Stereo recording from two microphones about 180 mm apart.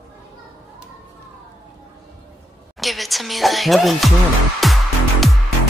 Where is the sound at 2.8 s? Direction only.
Centre (ahead or behind).